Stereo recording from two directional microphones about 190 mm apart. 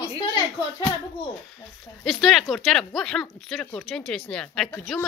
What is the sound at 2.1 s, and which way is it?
A woman's voice, centre (ahead or behind).